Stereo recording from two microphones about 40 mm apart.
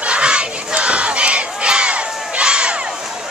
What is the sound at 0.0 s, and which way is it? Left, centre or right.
Battle cry, right.